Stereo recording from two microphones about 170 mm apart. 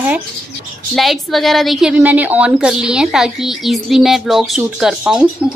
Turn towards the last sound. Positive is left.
turn(degrees=-5)  # may be behind; listen again after turning